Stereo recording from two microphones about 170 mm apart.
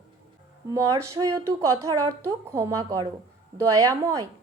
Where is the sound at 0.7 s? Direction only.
20° right (ahead or behind).